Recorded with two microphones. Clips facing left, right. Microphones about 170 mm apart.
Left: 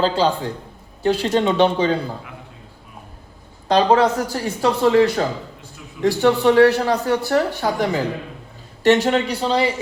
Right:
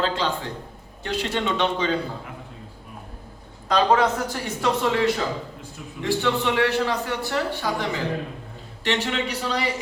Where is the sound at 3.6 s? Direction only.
35° left (ahead or behind).